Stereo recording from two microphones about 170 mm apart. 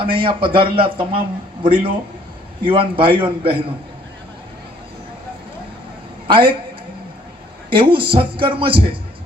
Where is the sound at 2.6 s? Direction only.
30° right (ahead or behind).